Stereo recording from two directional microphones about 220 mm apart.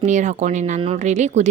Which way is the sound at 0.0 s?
35° right (ahead or behind).